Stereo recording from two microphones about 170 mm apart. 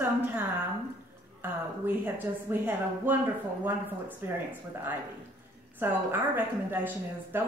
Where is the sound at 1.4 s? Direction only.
10° right (ahead or behind).